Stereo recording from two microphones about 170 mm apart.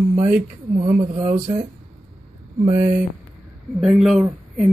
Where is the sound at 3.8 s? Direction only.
Centre (ahead or behind).